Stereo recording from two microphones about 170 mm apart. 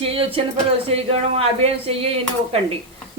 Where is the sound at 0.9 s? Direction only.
35° right (ahead or behind).